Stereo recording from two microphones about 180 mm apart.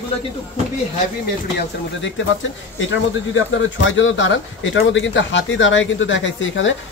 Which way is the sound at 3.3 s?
90° left.